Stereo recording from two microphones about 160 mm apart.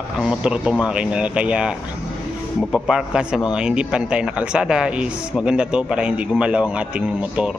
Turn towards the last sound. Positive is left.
turn(degrees=-5)  # may be behind; listen again after turning